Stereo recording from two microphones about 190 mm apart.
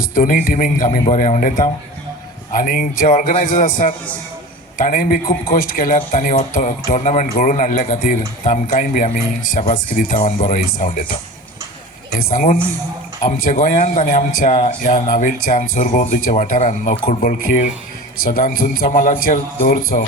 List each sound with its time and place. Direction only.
0.0 s speech: 45° left (ahead or behind)
12.1 s speech: 45° left (ahead or behind)